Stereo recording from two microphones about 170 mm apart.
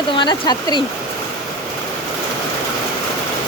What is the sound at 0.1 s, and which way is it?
Speech, 25° left (ahead or behind).